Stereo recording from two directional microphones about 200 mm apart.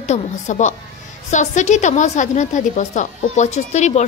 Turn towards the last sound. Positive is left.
turn(degrees=35)  # may be behind; listen again after turning